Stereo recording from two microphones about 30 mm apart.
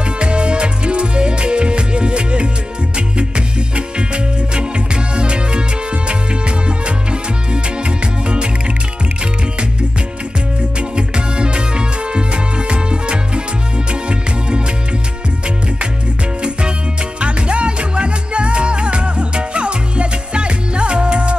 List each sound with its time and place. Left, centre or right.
0.2 s music: right
10.8 s music: right
17.2 s music: right